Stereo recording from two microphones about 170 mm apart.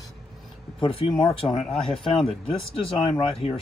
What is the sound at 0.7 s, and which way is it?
Speech, 30° left (ahead or behind).